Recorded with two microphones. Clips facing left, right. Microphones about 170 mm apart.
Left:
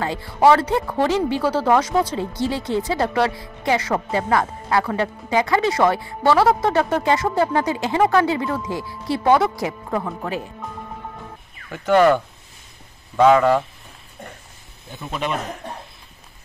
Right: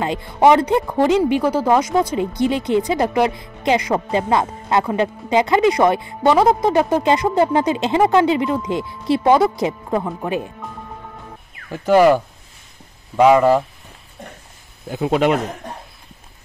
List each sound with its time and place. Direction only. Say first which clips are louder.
0.0 s speech: right 2 dB; 20° right (ahead or behind)
11.7 s speech: right 3 dB; 10° right (ahead or behind)
14.9 s speech: right 10 dB; 75° right (ahead or behind)